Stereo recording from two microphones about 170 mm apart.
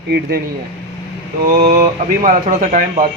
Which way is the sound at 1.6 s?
55° right (ahead or behind).